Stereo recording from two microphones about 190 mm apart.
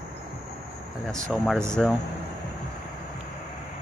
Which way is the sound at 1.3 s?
Centre (ahead or behind).